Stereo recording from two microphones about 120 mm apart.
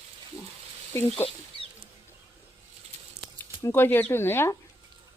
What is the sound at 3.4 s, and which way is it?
Speech, 20° left (ahead or behind).